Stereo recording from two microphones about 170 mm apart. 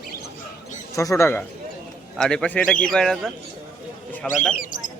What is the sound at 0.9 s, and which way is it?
Speech, 20° left (ahead or behind).